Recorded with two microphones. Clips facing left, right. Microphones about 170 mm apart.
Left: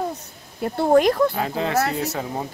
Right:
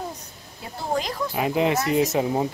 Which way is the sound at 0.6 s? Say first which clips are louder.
Left 11 dB; 60° left (ahead or behind).